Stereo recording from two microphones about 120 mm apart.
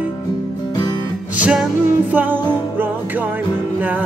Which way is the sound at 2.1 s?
15° right (ahead or behind).